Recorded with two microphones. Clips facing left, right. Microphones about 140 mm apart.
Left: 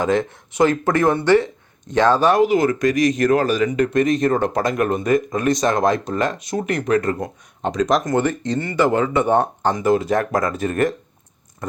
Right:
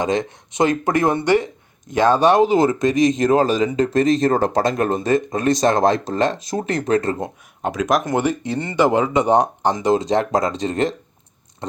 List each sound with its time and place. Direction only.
0.0 s speech: 20° right (ahead or behind)
7.6 s speech: 5° right (ahead or behind)
8.1 s speech: 15° right (ahead or behind)